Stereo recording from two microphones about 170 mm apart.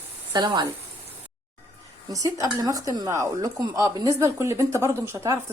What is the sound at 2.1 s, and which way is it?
A woman's voice, 20° right (ahead or behind).